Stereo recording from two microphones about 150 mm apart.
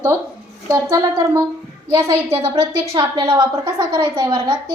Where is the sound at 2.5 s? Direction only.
35° right (ahead or behind).